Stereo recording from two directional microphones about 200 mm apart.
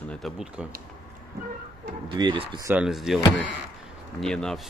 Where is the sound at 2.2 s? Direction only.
25° right (ahead or behind).